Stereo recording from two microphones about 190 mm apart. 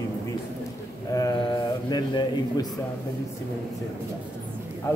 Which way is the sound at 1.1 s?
20° left (ahead or behind).